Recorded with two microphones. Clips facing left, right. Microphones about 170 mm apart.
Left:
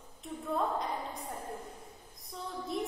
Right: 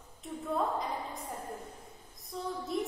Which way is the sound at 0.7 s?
Centre (ahead or behind).